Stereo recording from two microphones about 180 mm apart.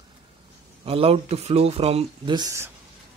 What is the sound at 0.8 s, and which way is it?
Speech, 30° right (ahead or behind).